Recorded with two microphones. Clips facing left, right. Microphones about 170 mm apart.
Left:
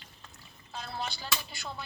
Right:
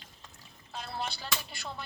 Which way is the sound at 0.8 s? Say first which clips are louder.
Even; centre (ahead or behind).